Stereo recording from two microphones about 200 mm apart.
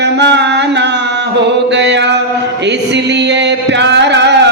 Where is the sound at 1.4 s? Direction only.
60° right (ahead or behind).